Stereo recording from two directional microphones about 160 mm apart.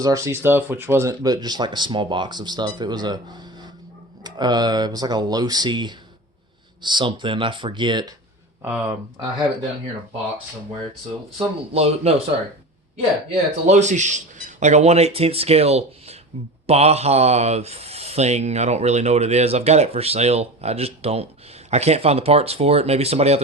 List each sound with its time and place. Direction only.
0.0 s speech: 20° right (ahead or behind)
8.6 s speech: 10° right (ahead or behind)
11.3 s speech: 40° right (ahead or behind)
13.3 s speech: 45° right (ahead or behind)